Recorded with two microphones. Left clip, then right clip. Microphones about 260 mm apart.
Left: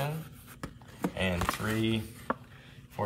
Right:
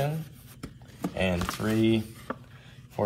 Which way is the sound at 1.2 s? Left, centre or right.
Centre.